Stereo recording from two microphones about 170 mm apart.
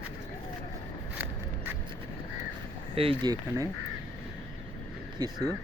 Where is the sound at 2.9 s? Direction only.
30° right (ahead or behind).